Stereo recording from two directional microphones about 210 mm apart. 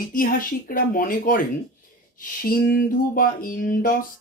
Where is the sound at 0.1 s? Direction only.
40° left (ahead or behind).